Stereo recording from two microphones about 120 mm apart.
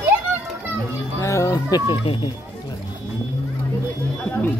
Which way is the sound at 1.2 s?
25° left (ahead or behind).